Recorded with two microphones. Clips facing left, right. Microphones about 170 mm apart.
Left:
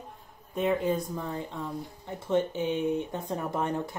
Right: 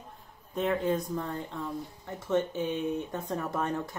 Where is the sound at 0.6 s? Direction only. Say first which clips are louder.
Left 1 dB; 5° left (ahead or behind).